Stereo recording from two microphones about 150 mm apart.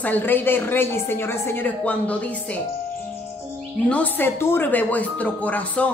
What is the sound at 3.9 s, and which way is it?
Speech, 10° left (ahead or behind).